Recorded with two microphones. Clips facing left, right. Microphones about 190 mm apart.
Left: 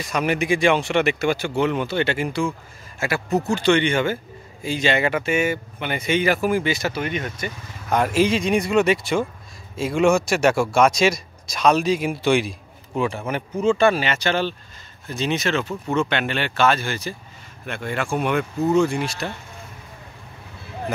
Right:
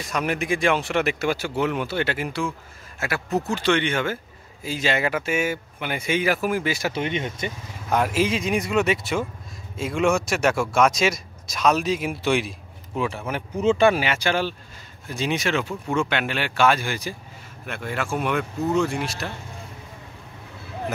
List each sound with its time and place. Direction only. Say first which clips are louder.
0.1 s speech: left 3 dB; centre (ahead or behind)
6.9 s speech: even; 25° right (ahead or behind)
7.9 s speech: left 3 dB; 5° right (ahead or behind)
13.6 s speech: even; 15° right (ahead or behind); by 19.3 s centre (ahead or behind)